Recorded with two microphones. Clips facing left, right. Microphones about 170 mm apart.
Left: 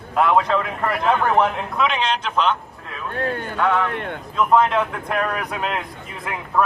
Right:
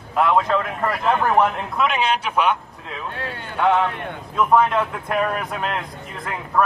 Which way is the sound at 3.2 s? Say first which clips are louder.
Left 7 dB; 50° left (ahead or behind).